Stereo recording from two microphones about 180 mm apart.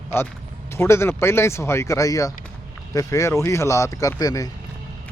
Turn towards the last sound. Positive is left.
turn(degrees=20)  # may be behind; listen again after turning